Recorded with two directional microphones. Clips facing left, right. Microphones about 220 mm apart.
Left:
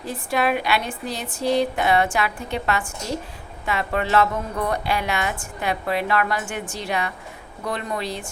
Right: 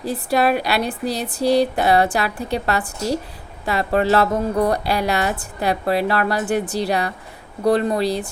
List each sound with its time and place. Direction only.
0.0 s a woman's voice: 35° right (ahead or behind)